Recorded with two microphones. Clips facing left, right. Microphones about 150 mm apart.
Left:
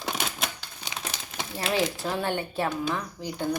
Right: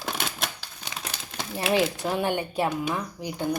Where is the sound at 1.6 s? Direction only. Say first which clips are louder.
Right 3 dB; 10° right (ahead or behind).